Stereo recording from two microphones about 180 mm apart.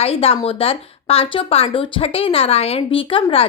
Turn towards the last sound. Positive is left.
turn(degrees=30)  # may be behind; listen again after turning